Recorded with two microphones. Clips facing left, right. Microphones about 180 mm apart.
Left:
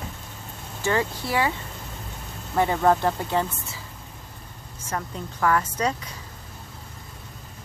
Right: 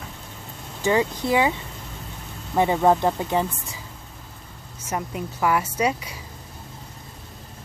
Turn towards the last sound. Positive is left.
turn(degrees=-10)  # may be behind; listen again after turning